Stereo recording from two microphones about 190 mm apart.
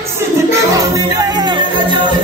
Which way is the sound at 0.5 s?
15° right (ahead or behind).